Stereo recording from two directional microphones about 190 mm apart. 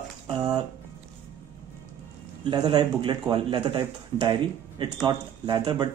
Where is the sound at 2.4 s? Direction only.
25° right (ahead or behind).